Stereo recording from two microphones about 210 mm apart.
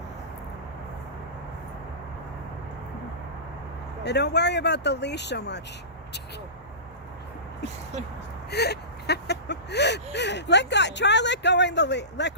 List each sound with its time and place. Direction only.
4.0 s speech: 55° left (ahead or behind)
8.4 s whimper: 50° left (ahead or behind)